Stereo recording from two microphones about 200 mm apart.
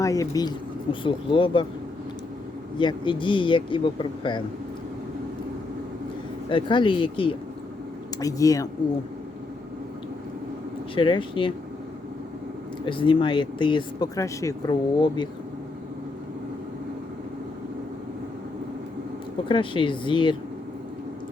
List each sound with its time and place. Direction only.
0.0 s speech: 15° left (ahead or behind)
2.7 s speech: 25° left (ahead or behind)
6.5 s speech: 25° left (ahead or behind)
10.9 s speech: 25° left (ahead or behind)
12.8 s speech: 25° left (ahead or behind)
19.5 s speech: 25° left (ahead or behind)